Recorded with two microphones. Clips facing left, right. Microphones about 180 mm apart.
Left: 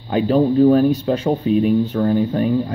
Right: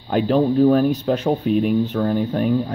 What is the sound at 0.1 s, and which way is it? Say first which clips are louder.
Speech: left 2 dB; centre (ahead or behind).